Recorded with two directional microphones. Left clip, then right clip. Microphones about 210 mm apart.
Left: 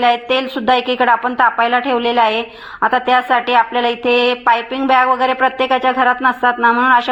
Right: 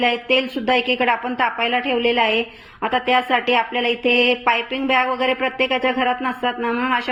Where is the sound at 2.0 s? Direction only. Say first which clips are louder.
Left 3 dB; 55° left (ahead or behind).